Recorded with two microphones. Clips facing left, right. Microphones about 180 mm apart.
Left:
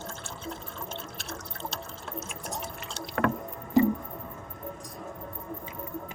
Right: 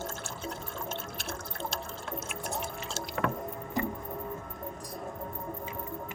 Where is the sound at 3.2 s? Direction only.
60° left (ahead or behind).